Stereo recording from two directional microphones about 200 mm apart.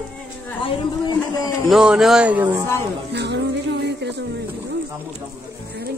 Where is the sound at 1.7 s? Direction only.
5° right (ahead or behind).